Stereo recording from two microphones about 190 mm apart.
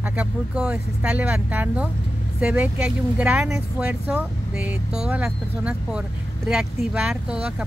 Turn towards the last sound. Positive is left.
turn(degrees=-5)  # may be behind; listen again after turning